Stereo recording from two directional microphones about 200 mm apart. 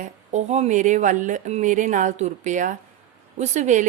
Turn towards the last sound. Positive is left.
turn(degrees=-35)  # may be behind; listen again after turning